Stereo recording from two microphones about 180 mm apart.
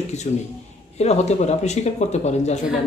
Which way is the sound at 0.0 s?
40° left (ahead or behind).